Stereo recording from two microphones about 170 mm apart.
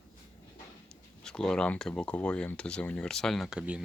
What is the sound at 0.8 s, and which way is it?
Speech, 5° left (ahead or behind).